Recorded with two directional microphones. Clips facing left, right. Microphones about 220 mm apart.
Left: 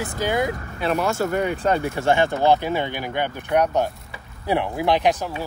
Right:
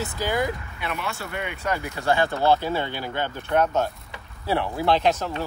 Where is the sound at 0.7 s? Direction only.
35° left (ahead or behind).